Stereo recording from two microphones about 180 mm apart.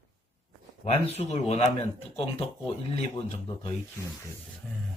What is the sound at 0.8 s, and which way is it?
Speech, 35° left (ahead or behind).